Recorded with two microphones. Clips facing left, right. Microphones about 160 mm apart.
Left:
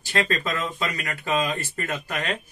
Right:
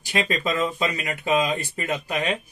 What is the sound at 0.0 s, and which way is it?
A man's voice, 15° right (ahead or behind).